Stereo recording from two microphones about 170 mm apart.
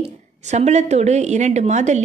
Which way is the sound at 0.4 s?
40° right (ahead or behind).